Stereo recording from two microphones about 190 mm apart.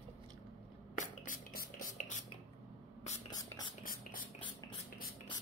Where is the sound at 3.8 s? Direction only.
50° left (ahead or behind).